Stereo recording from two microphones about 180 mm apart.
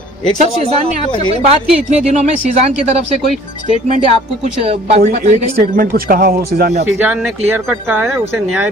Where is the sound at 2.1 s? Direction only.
40° right (ahead or behind).